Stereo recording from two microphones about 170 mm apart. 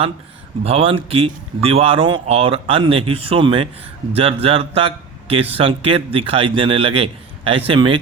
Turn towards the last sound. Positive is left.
turn(degrees=-30)  # may be behind; listen again after turning